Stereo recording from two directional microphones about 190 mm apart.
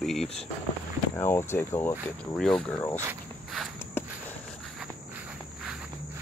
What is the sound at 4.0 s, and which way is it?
Walk, 10° left (ahead or behind).